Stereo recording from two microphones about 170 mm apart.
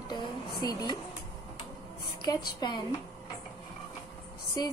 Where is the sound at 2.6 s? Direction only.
25° left (ahead or behind).